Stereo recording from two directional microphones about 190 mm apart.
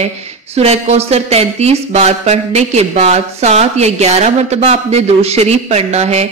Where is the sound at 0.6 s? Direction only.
35° right (ahead or behind).